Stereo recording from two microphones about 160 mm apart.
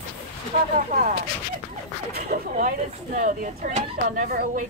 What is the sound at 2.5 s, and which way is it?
Speech, 50° right (ahead or behind).